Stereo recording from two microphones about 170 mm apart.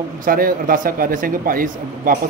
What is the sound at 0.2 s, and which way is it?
Speech, 55° right (ahead or behind).